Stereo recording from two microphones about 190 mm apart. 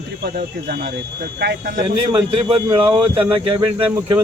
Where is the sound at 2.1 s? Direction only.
25° right (ahead or behind).